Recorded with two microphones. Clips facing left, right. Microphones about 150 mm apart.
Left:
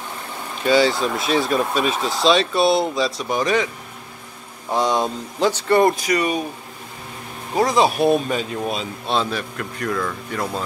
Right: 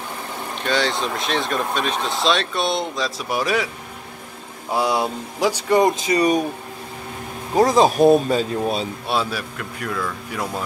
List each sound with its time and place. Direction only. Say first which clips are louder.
0.7 s speech: left 5 dB; 5° left (ahead or behind)
4.6 s speech: left 1 dB; 10° right (ahead or behind)
7.6 s speech: right 3 dB; 40° right (ahead or behind)
9.0 s speech: left 1 dB; 5° right (ahead or behind)